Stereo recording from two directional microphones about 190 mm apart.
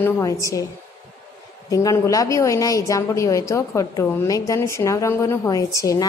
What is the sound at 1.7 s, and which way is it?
A woman's voice, 20° left (ahead or behind).